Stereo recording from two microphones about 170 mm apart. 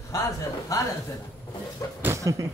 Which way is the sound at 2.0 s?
20° right (ahead or behind).